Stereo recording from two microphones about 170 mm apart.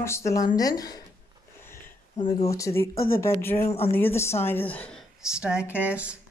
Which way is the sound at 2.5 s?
15° left (ahead or behind).